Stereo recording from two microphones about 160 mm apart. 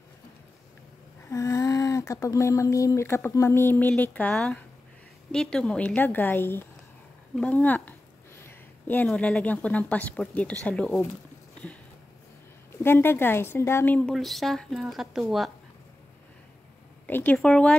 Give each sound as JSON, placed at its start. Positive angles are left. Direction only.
{"t": 1.3, "sound": "a woman's voice", "side_deg": 20}
{"t": 12.8, "sound": "a woman's voice", "side_deg": 15}
{"t": 17.0, "sound": "speech", "side_deg": 10}